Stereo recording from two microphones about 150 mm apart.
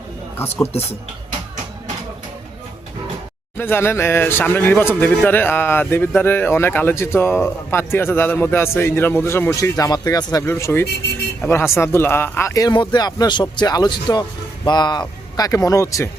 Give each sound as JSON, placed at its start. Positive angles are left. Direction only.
{"t": 0.7, "sound": "speech", "side_deg": 45}
{"t": 3.6, "sound": "speech", "side_deg": 15}